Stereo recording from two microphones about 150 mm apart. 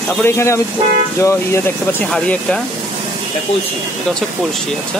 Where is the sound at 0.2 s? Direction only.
15° left (ahead or behind).